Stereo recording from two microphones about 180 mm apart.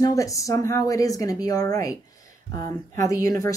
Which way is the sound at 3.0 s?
20° left (ahead or behind).